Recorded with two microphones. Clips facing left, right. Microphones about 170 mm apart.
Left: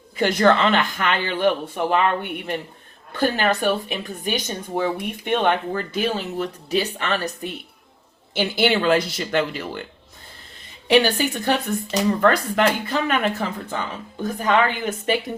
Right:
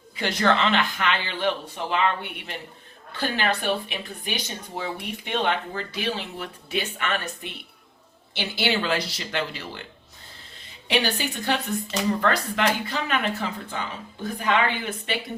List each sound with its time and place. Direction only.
0.2 s speech: 50° left (ahead or behind)
8.3 s speech: 50° left (ahead or behind)
10.8 s speech: 45° left (ahead or behind)
14.2 s speech: 45° left (ahead or behind)